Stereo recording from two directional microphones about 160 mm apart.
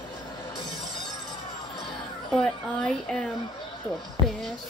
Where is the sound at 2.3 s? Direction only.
5° left (ahead or behind).